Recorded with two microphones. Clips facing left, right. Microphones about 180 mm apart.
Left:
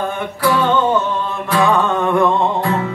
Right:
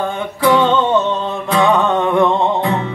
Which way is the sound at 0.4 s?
25° right (ahead or behind).